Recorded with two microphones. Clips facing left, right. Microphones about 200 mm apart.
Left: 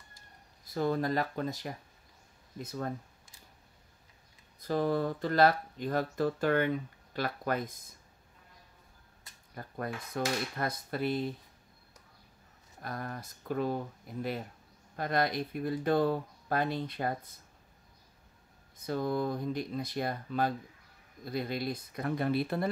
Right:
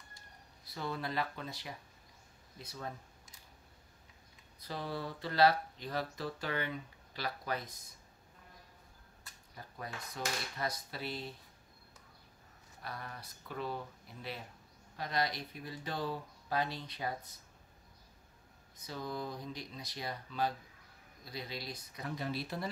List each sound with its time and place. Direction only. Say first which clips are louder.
0.7 s speech: left 10 dB; 45° left (ahead or behind)
4.6 s speech: left 11 dB; 50° left (ahead or behind)
9.6 s speech: left 8 dB; 55° left (ahead or behind)
12.8 s speech: left 7 dB; 45° left (ahead or behind)
18.8 s speech: left 9 dB; 55° left (ahead or behind)